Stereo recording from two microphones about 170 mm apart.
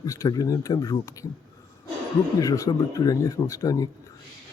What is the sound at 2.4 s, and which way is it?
A man's voice, 20° left (ahead or behind).